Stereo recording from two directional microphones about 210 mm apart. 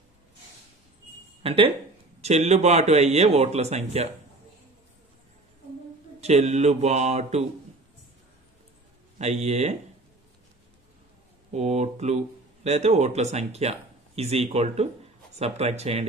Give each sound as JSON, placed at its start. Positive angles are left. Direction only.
{"t": 1.4, "sound": "speech", "side_deg": -25}
{"t": 6.2, "sound": "speech", "side_deg": -30}
{"t": 9.2, "sound": "speech", "side_deg": -30}
{"t": 11.5, "sound": "speech", "side_deg": -30}